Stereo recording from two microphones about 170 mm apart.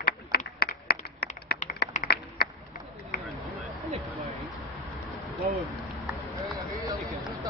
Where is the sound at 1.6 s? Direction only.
50° left (ahead or behind).